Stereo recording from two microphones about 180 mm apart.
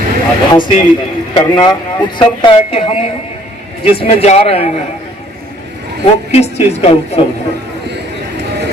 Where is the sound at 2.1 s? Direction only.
25° left (ahead or behind).